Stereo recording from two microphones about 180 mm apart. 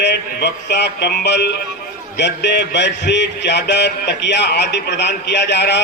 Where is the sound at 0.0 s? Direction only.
70° left (ahead or behind).